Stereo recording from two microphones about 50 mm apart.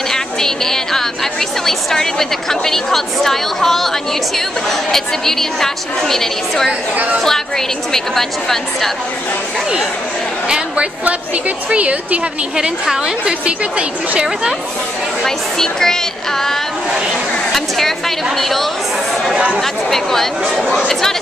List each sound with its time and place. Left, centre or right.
0.1 s a woman's voice: centre
11.1 s a woman's voice: right
12.5 s a woman's voice: centre
13.2 s a woman's voice: right
15.2 s a woman's voice: centre
19.3 s a woman's voice: right
19.6 s a woman's voice: centre